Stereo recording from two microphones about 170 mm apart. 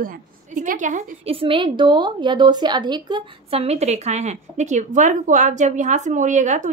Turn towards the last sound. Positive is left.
turn(degrees=-45)  # may be behind; listen again after turning